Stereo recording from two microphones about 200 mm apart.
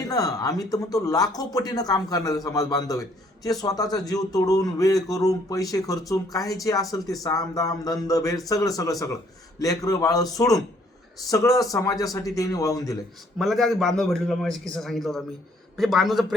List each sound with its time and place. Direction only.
0.1 s speech: 15° left (ahead or behind)
13.4 s a man's voice: centre (ahead or behind)